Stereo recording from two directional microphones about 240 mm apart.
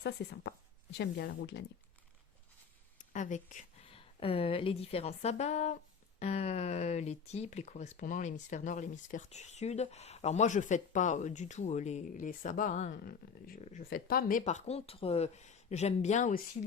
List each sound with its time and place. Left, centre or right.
0.0 s speech: left
3.0 s a woman's voice: left